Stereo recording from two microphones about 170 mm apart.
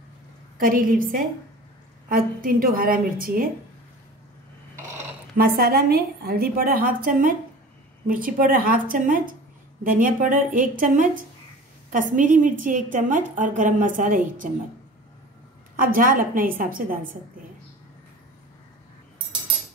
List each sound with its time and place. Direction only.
0.6 s a woman's voice: 55° right (ahead or behind)
5.4 s a woman's voice: 60° right (ahead or behind)
15.7 s a woman's voice: 55° right (ahead or behind)